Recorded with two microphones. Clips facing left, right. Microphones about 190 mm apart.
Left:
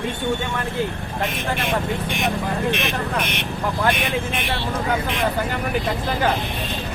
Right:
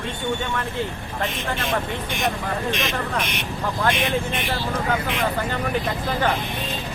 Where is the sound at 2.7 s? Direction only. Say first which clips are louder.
Left 2 dB; 60° left (ahead or behind).